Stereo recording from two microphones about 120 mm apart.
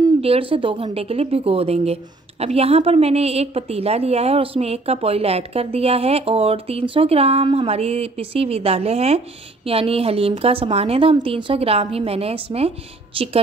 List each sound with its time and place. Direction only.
0.2 s a woman's voice: 50° right (ahead or behind)